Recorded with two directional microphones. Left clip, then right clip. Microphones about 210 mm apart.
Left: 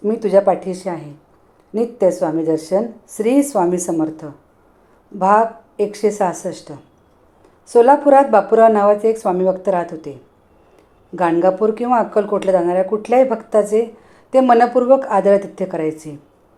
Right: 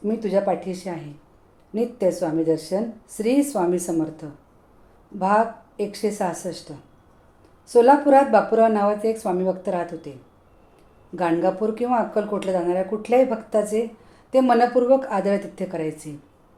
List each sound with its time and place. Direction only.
0.0 s speech: 20° left (ahead or behind)